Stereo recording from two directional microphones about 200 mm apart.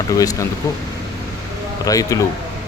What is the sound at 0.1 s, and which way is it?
Speech, 15° left (ahead or behind).